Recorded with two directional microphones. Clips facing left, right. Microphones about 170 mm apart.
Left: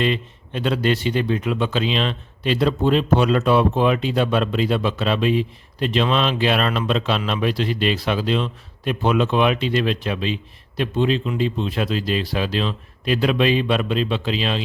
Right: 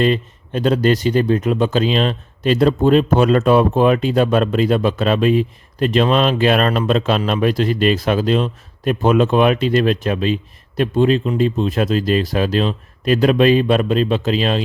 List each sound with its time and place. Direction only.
0.0 s speech: 40° right (ahead or behind)